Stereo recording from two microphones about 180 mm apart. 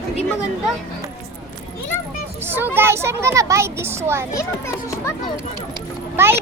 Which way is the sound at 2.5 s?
10° right (ahead or behind).